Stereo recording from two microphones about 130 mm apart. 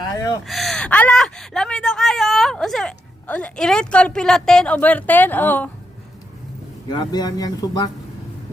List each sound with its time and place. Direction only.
0.4 s a woman's voice: centre (ahead or behind)
6.8 s speech: 30° left (ahead or behind)